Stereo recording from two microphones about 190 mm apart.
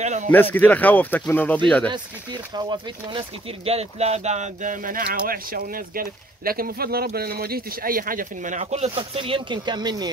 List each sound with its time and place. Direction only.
0.0 s a sound: 40° right (ahead or behind)
0.3 s speech: 10° left (ahead or behind)
1.9 s speech: 25° right (ahead or behind)